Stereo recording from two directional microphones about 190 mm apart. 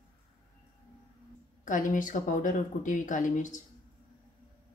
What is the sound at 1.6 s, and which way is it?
Speech, 45° left (ahead or behind).